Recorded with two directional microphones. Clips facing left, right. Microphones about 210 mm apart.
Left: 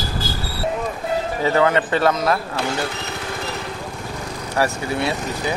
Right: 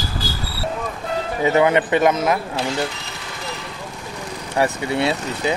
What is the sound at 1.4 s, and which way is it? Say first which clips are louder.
Speech: right 2 dB; 20° right (ahead or behind).